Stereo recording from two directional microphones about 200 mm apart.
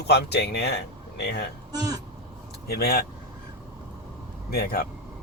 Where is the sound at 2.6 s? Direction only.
50° left (ahead or behind).